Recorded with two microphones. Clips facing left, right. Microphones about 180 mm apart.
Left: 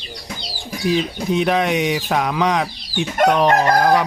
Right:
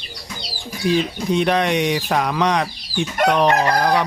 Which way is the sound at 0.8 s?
Centre (ahead or behind).